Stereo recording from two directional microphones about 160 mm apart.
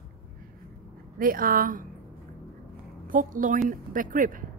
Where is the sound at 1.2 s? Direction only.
60° right (ahead or behind).